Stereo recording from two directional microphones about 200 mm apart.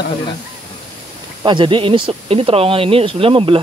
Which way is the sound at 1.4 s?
25° right (ahead or behind).